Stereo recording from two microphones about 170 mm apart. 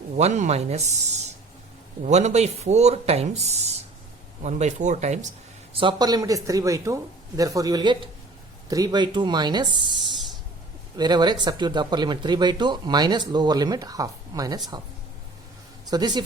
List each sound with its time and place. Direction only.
0.2 s speech: 45° right (ahead or behind)
5.7 s speech: 25° right (ahead or behind)
10.9 s speech: 25° right (ahead or behind)
15.9 s speech: 25° right (ahead or behind)